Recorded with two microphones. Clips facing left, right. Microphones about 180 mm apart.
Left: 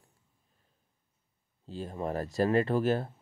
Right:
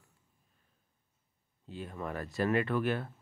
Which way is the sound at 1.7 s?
30° left (ahead or behind).